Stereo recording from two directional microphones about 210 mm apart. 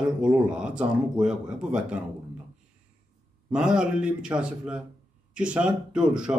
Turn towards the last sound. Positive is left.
turn(degrees=-5)  # may be behind; listen again after turning